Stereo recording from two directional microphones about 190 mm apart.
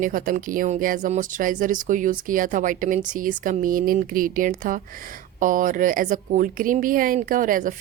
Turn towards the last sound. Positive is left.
turn(degrees=-45)  # may be behind; listen again after turning